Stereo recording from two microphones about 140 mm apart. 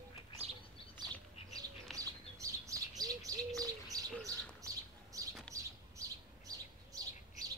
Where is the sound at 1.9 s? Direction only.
25° right (ahead or behind).